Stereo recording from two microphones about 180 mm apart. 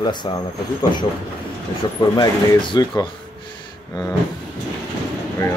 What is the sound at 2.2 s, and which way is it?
Speech, 25° left (ahead or behind).